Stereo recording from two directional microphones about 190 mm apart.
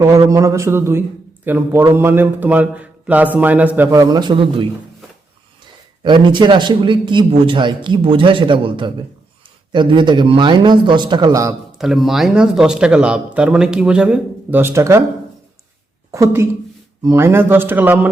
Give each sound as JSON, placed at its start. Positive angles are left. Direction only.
{"t": 0.0, "sound": "a man's voice", "side_deg": -15}
{"t": 6.0, "sound": "a man's voice", "side_deg": -25}
{"t": 11.8, "sound": "speech", "side_deg": 0}
{"t": 16.1, "sound": "a man's voice", "side_deg": -15}